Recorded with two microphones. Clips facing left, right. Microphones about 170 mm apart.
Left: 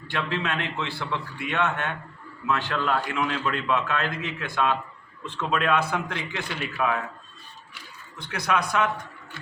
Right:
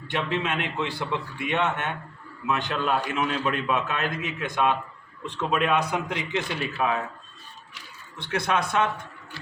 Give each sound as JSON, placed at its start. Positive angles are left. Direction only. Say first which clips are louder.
{"t": 0.1, "sound": "a man's voice", "louder": "right 1 dB", "side_deg": -20}
{"t": 8.2, "sound": "a man's voice", "louder": "right 1 dB", "side_deg": -25}